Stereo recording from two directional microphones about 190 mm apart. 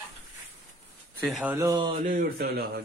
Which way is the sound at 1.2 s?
5° right (ahead or behind).